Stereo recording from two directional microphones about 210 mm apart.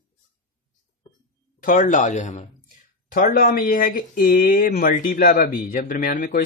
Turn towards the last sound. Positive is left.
turn(degrees=40)  # may be behind; listen again after turning